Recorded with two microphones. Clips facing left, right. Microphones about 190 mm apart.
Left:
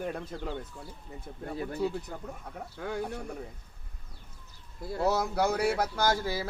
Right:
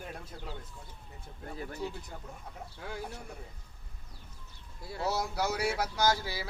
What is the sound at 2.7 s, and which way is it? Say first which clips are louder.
Speech: left 7 dB; 60° left (ahead or behind).